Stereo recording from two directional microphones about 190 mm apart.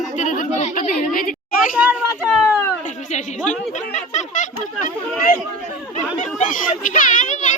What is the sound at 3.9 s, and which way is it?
Speech, 40° left (ahead or behind).